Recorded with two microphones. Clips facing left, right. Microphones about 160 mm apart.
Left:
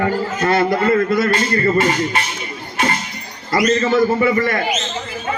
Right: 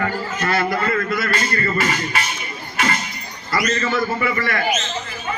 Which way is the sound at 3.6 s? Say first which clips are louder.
Left 7 dB; 30° left (ahead or behind).